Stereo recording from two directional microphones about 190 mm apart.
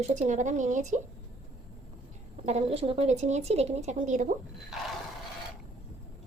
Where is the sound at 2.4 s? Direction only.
35° right (ahead or behind).